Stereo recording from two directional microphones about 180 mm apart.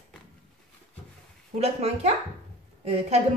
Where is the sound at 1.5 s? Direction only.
35° right (ahead or behind).